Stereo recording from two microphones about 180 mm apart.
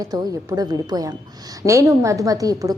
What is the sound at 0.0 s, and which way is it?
A woman's voice, 20° right (ahead or behind).